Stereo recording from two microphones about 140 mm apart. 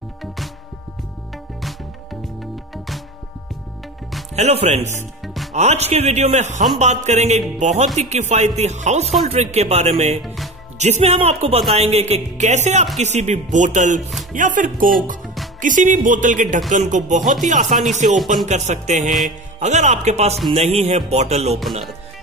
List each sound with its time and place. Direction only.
4.4 s speech: 50° right (ahead or behind)
5.2 s music: centre (ahead or behind)
5.5 s speech: 50° right (ahead or behind)
6.8 s music: 55° right (ahead or behind)
8.1 s speech: 55° right (ahead or behind)
10.2 s music: centre (ahead or behind)
10.8 s speech: 50° right (ahead or behind)
13.0 s music: 55° right (ahead or behind)
14.3 s speech: 70° right (ahead or behind)
15.2 s music: centre (ahead or behind)
15.6 s music: 65° right (ahead or behind)
18.1 s speech: centre (ahead or behind)
18.5 s music: 55° right (ahead or behind)
20.5 s speech: 50° right (ahead or behind)